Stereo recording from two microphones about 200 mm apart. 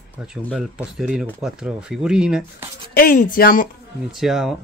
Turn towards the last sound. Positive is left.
turn(degrees=0)  # may be behind; listen again after turning